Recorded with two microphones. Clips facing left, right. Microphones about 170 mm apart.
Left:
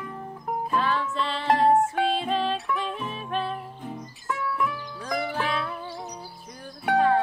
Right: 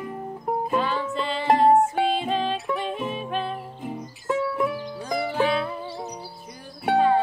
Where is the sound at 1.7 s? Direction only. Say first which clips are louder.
Right 3 dB; 20° right (ahead or behind).